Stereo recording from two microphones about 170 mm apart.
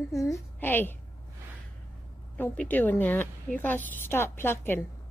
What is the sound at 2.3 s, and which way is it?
A woman's voice, 10° left (ahead or behind).